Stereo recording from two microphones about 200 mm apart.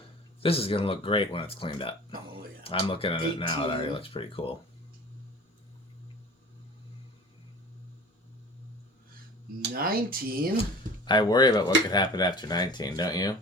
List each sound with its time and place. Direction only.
0.4 s speech: 30° left (ahead or behind)
9.6 s speech: 50° right (ahead or behind)
10.6 s speech: 20° left (ahead or behind)